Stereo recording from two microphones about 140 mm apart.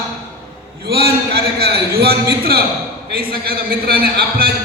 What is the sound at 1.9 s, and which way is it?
A man's voice, 90° right.